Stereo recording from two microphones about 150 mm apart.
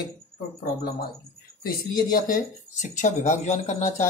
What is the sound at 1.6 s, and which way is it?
Speech, 70° left (ahead or behind).